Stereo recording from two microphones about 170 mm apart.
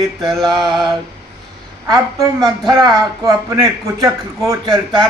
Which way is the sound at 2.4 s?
20° right (ahead or behind).